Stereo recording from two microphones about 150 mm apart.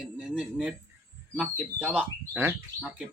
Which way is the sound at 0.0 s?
5° right (ahead or behind).